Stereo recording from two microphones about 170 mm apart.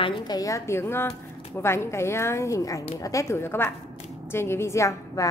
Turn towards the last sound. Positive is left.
turn(degrees=15)  # may be behind; listen again after turning